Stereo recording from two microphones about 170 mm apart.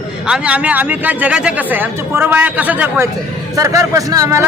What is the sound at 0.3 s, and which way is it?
Speech, 5° right (ahead or behind).